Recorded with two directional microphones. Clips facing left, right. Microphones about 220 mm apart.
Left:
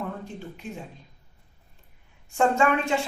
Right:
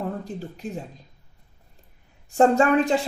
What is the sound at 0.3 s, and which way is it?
Speech, 40° right (ahead or behind).